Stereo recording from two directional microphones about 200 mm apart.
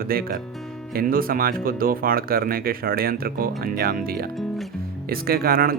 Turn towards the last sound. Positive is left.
turn(degrees=-50)  # may be behind; listen again after turning